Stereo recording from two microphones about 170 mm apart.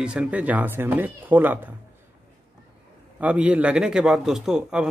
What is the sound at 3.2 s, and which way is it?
Speech, 10° right (ahead or behind).